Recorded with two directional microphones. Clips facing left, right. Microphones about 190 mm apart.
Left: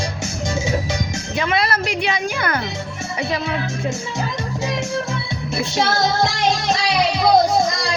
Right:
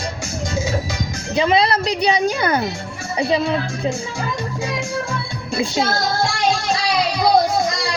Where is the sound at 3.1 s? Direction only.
30° right (ahead or behind).